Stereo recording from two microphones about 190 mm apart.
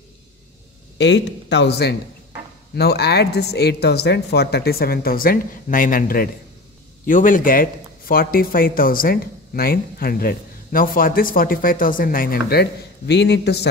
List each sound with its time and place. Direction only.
0.9 s speech: 70° left (ahead or behind)